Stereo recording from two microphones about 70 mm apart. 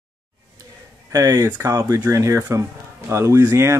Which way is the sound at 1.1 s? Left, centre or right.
Right.